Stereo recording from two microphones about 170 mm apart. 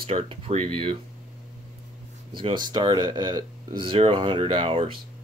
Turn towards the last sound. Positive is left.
turn(degrees=-30)  # may be behind; listen again after turning